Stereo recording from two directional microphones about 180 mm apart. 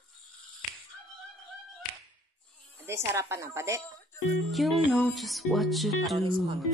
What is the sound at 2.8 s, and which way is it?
Speech, 15° right (ahead or behind).